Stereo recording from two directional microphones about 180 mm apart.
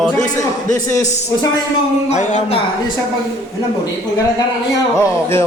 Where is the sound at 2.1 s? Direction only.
40° left (ahead or behind).